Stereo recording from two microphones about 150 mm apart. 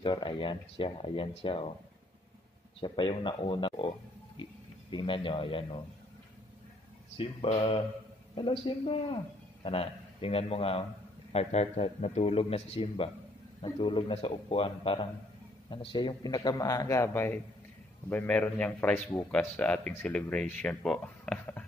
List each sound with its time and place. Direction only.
0.0 s a man's voice: 35° left (ahead or behind)
2.8 s a man's voice: 30° left (ahead or behind)
4.9 s a man's voice: 35° left (ahead or behind)
7.2 s a man's voice: 35° left (ahead or behind); by 21.6 s 10° left (ahead or behind)